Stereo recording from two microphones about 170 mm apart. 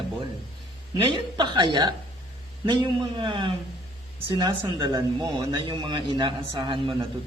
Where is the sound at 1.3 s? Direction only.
25° right (ahead or behind).